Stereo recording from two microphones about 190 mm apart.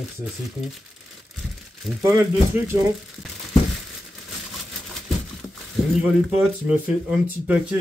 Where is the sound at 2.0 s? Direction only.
15° right (ahead or behind).